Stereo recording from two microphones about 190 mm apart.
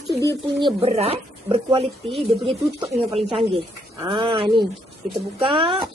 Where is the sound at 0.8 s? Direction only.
35° right (ahead or behind).